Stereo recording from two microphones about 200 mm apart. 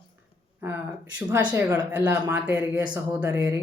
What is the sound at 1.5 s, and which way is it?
Speech, 10° right (ahead or behind).